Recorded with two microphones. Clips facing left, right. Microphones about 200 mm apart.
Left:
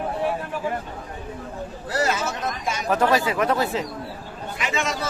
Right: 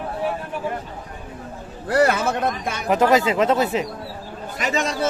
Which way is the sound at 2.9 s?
20° right (ahead or behind).